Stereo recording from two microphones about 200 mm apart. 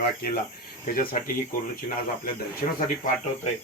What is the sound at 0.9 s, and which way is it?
Speech, 45° left (ahead or behind).